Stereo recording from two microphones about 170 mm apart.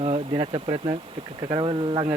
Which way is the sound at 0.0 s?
35° right (ahead or behind).